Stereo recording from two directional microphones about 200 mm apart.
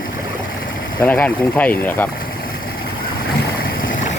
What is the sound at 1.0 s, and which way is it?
Speech, 10° left (ahead or behind).